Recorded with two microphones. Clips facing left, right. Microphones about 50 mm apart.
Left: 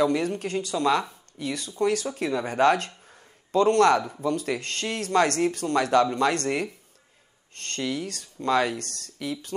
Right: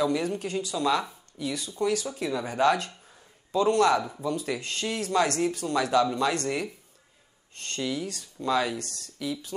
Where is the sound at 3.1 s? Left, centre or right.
Left.